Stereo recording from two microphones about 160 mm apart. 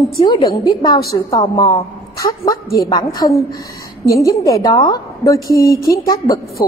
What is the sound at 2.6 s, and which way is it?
Speech, 70° left (ahead or behind).